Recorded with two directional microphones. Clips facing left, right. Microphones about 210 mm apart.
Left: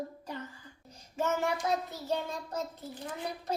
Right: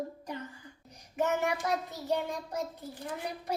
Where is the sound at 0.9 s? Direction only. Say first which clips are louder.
Right 2 dB; 15° right (ahead or behind).